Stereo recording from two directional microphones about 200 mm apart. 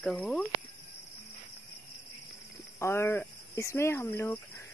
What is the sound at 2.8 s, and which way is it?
Speech, 15° left (ahead or behind).